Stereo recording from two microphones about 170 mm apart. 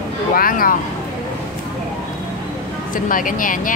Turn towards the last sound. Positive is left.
turn(degrees=50)  # may be behind; listen again after turning